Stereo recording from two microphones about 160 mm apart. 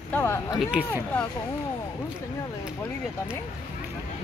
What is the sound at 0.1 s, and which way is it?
Speech, 10° left (ahead or behind).